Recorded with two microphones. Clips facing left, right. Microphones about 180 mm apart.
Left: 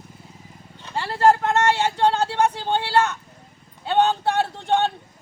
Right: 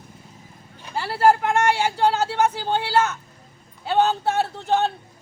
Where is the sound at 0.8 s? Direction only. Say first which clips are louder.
Even; 5° right (ahead or behind).